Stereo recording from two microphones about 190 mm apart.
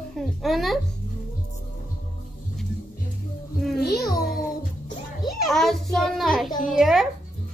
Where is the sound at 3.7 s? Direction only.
55° left (ahead or behind).